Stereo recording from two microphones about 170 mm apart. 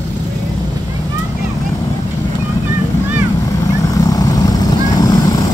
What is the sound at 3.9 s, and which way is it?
Vehicle, 20° left (ahead or behind).